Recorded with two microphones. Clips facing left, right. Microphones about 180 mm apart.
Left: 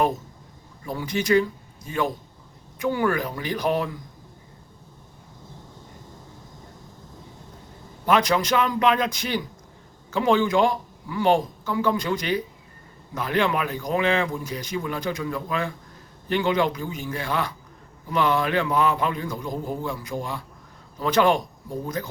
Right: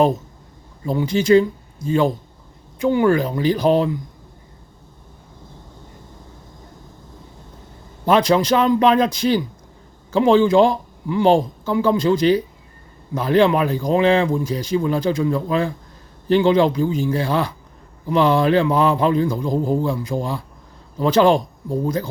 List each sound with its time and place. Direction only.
0.9 s speech: 30° right (ahead or behind)
8.0 s speech: 30° right (ahead or behind)